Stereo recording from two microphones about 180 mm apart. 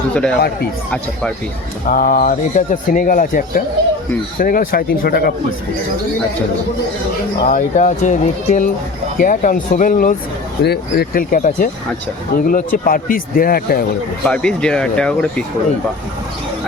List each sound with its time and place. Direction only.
0.1 s speech: 5° left (ahead or behind)
1.9 s speech: 50° left (ahead or behind)
7.4 s speech: 45° left (ahead or behind)
10.6 s speech: 60° left (ahead or behind)
14.3 s speech: 5° left (ahead or behind)